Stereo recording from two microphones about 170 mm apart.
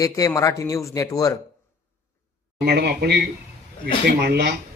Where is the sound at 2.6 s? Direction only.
70° right (ahead or behind).